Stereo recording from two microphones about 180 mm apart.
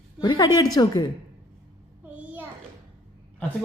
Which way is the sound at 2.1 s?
10° right (ahead or behind).